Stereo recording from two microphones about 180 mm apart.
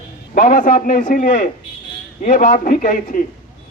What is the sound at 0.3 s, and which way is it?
Speech, 50° left (ahead or behind).